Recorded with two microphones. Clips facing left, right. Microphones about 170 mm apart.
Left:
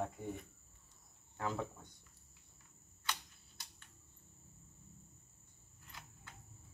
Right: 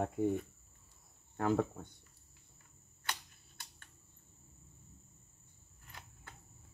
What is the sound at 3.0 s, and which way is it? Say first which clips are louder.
Camera: even; 50° right (ahead or behind).